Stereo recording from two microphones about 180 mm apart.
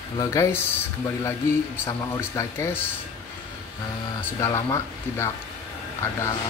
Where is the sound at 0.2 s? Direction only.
15° left (ahead or behind).